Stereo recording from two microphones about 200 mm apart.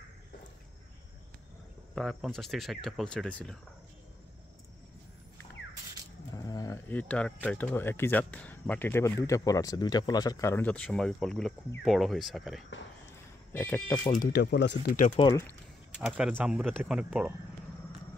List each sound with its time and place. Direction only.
2.0 s speech: centre (ahead or behind)
6.3 s speech: 15° left (ahead or behind)
14.1 s speech: 50° left (ahead or behind)
15.1 s speech: 20° left (ahead or behind)
16.0 s speech: 5° right (ahead or behind)